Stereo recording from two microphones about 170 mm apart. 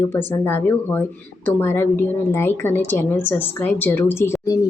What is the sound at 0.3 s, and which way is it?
A woman's voice, 10° left (ahead or behind).